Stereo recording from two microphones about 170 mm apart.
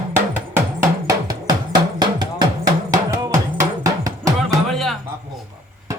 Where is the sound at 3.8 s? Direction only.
20° right (ahead or behind).